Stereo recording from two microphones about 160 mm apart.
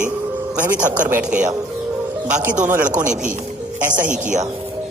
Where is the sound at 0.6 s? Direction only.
55° right (ahead or behind).